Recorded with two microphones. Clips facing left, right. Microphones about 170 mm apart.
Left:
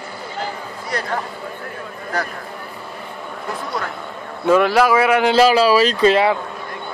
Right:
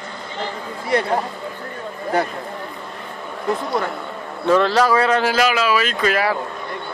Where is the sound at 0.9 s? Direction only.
30° right (ahead or behind).